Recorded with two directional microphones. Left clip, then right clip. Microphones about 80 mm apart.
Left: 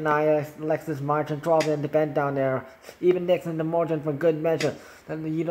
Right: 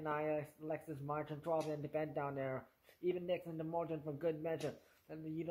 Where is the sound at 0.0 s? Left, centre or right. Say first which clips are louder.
Left 18 dB; left.